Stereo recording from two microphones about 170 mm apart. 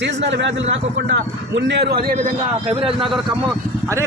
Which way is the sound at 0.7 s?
90° right.